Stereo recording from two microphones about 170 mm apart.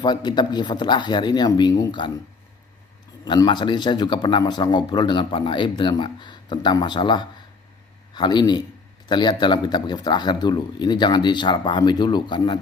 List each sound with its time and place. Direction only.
0.0 s speech: 25° left (ahead or behind)
3.2 s speech: 25° left (ahead or behind)